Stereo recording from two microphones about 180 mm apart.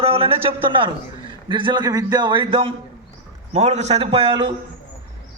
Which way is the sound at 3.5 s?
40° right (ahead or behind).